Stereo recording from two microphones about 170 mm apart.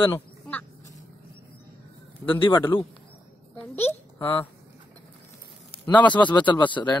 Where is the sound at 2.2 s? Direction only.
20° right (ahead or behind).